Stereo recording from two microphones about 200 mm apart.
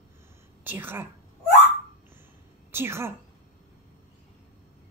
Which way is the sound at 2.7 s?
10° right (ahead or behind).